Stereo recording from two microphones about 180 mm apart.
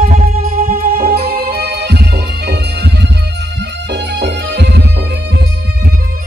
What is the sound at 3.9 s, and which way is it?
Music, 70° right (ahead or behind).